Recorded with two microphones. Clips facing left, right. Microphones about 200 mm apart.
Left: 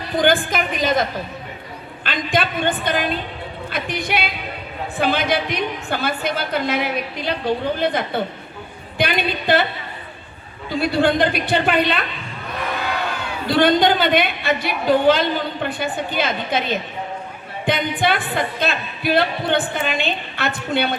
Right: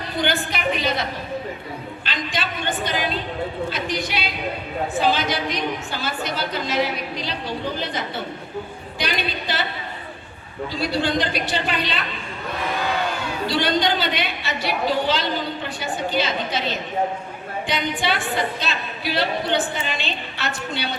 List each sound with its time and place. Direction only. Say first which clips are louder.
0.2 s a woman's voice: left 6 dB; 50° left (ahead or behind)
2.0 s speech: left 7 dB; 55° left (ahead or behind)
10.7 s speech: left 6 dB; 55° left (ahead or behind)
13.5 s speech: left 7 dB; 55° left (ahead or behind)